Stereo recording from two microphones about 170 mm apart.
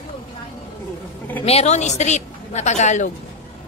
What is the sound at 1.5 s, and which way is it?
A woman's voice, 40° left (ahead or behind).